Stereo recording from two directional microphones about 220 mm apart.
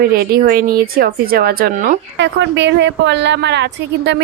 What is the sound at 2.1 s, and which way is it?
Speech, 55° right (ahead or behind).